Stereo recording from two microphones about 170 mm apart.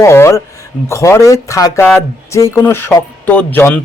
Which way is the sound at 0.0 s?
15° left (ahead or behind).